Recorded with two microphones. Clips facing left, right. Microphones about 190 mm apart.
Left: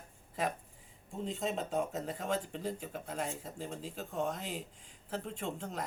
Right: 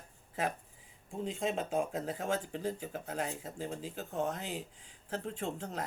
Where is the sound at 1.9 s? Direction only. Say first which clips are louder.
Right 1 dB; 5° right (ahead or behind).